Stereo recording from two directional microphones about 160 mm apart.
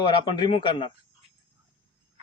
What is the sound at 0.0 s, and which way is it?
Speech, 30° left (ahead or behind).